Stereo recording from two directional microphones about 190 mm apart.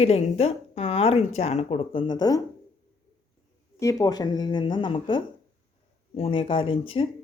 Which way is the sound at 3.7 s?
20° left (ahead or behind).